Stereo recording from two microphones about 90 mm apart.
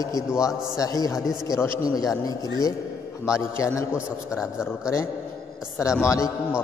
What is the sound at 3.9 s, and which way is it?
Speech, 10° right (ahead or behind).